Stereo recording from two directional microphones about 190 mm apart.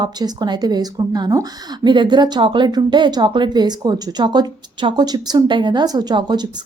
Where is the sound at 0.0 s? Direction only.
20° right (ahead or behind).